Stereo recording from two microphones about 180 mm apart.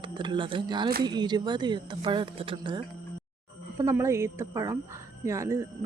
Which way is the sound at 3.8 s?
15° right (ahead or behind).